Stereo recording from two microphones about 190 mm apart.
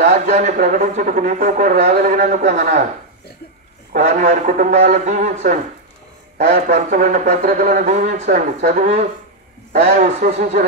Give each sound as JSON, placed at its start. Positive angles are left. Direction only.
{"t": 0.0, "sound": "speech", "side_deg": -35}
{"t": 3.9, "sound": "speech", "side_deg": -40}